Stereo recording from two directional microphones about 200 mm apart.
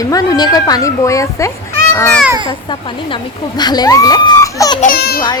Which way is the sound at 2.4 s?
25° left (ahead or behind).